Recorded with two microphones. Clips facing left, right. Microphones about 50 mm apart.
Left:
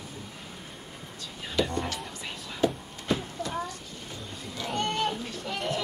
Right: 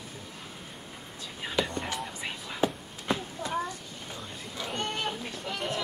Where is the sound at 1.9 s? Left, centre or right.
Centre.